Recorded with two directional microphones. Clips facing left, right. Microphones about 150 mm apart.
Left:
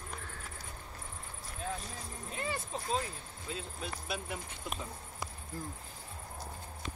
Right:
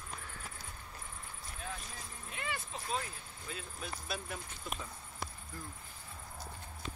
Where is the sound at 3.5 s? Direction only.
20° left (ahead or behind).